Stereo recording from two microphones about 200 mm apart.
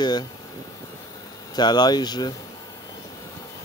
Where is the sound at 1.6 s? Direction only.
20° left (ahead or behind).